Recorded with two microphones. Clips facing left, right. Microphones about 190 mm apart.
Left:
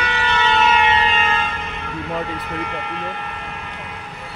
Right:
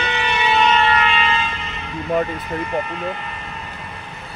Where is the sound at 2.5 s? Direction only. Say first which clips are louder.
Right 3 dB; 60° left (ahead or behind).